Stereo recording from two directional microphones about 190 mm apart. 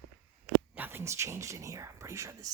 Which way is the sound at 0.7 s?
10° right (ahead or behind).